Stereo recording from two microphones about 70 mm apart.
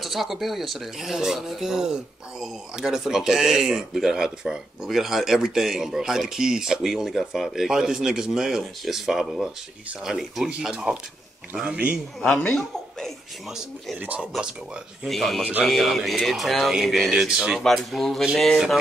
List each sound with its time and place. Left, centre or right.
0.0 s speech: centre
12.2 s speech: centre
13.9 s speech: right
15.0 s speech: centre